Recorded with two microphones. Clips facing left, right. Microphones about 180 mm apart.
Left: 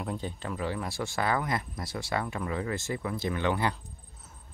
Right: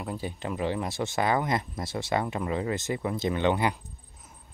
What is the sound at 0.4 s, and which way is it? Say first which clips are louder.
Speech: right 4 dB; 20° right (ahead or behind).